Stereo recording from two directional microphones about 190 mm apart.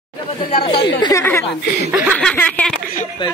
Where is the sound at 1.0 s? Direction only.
15° left (ahead or behind).